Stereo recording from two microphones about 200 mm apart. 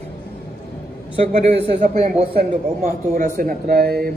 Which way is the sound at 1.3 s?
35° right (ahead or behind).